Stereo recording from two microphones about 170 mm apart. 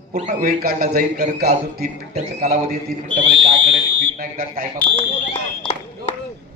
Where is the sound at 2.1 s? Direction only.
45° right (ahead or behind).